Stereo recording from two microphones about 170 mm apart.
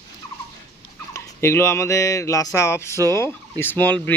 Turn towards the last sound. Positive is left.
turn(degrees=10)  # may be behind; listen again after turning